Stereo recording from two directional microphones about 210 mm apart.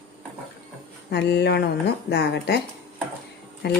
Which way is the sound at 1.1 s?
55° left (ahead or behind).